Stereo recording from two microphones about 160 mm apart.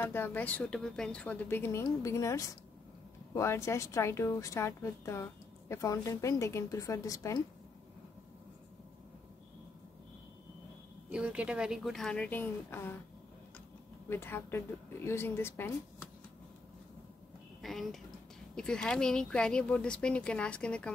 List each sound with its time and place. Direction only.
0.0 s a woman's voice: 15° left (ahead or behind)
11.1 s speech: 5° right (ahead or behind); by 12.9 s 15° left (ahead or behind)
14.0 s speech: 15° left (ahead or behind)
17.6 s speech: centre (ahead or behind)